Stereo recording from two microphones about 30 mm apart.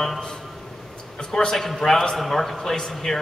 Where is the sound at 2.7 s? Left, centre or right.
Left.